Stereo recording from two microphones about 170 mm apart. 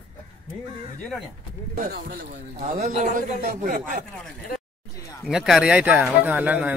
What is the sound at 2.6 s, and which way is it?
A man's voice, 45° right (ahead or behind).